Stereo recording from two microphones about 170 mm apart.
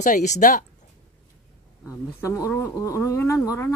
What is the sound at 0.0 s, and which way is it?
Speech, 45° left (ahead or behind).